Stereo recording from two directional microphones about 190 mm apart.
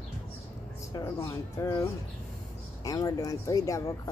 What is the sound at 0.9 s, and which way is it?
Speech, 15° left (ahead or behind).